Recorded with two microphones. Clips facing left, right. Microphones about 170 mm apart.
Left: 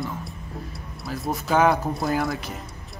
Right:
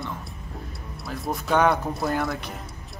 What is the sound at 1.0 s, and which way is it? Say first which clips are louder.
Speech: left 2 dB; centre (ahead or behind).